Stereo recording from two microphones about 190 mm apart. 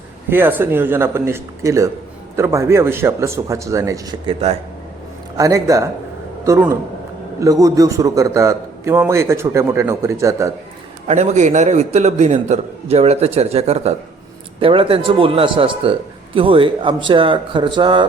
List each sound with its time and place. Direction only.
0.3 s a man's voice: 10° right (ahead or behind)
4.3 s a man's voice: 30° right (ahead or behind)
5.4 s a man's voice: 15° right (ahead or behind)
11.1 s a man's voice: 35° right (ahead or behind)